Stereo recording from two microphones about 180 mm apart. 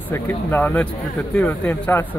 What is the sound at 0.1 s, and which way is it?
Speech, 10° left (ahead or behind).